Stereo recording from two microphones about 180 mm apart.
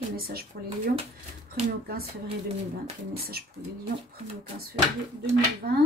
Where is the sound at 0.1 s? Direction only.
55° right (ahead or behind).